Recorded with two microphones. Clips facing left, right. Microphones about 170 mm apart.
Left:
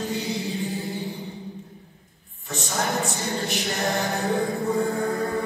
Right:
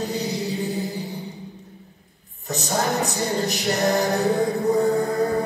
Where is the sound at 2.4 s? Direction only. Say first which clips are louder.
Right 4 dB; 40° right (ahead or behind).